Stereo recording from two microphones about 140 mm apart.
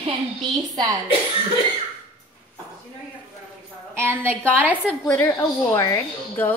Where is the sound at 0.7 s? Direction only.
30° right (ahead or behind).